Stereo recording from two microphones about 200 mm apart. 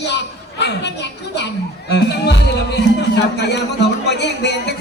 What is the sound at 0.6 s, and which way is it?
Speech, 60° left (ahead or behind).